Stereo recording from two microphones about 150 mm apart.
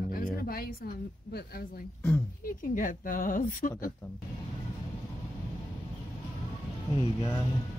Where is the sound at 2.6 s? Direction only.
65° left (ahead or behind).